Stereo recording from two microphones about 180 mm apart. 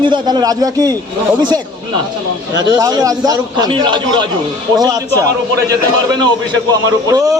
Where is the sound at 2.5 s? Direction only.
20° right (ahead or behind).